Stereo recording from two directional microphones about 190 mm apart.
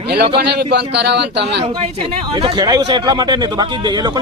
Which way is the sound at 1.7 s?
30° right (ahead or behind).